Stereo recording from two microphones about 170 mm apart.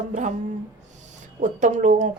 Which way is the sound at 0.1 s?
45° right (ahead or behind).